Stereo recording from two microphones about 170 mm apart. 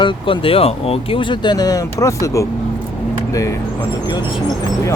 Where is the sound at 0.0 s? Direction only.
30° left (ahead or behind).